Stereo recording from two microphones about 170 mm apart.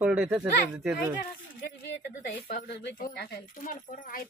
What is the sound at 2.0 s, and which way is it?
Speech, 80° left.